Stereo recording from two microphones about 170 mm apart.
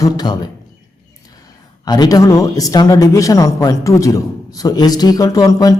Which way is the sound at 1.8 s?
25° left (ahead or behind).